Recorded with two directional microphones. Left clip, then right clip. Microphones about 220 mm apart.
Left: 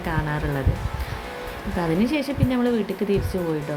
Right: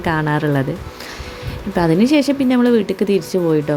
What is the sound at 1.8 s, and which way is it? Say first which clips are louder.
Speech: right 9 dB; 35° right (ahead or behind).